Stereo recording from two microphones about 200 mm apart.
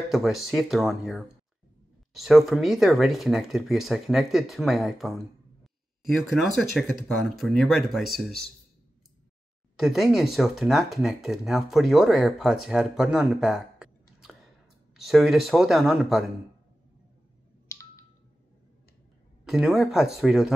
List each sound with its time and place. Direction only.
0.1 s speech: centre (ahead or behind)
9.8 s speech: centre (ahead or behind)
19.4 s speech: 5° right (ahead or behind)